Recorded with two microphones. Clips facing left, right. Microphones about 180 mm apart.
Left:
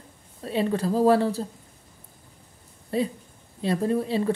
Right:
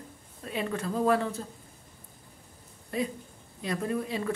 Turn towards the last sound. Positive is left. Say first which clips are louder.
# left 7 dB
turn(degrees=30)  # may be behind; listen again after turning